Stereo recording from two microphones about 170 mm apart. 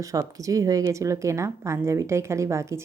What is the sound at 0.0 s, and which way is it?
Speech, 20° right (ahead or behind).